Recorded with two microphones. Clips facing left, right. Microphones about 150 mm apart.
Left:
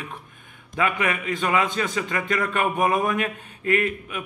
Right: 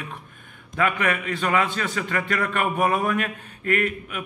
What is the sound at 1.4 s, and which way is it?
A man's voice, 10° left (ahead or behind).